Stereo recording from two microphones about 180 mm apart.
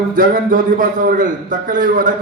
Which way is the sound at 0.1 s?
50° right (ahead or behind).